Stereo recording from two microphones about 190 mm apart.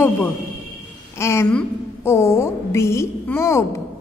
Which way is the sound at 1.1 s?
15° left (ahead or behind).